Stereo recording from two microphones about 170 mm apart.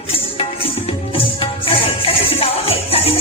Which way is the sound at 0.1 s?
35° left (ahead or behind).